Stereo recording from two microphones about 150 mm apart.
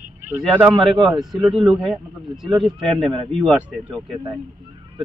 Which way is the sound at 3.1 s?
35° right (ahead or behind).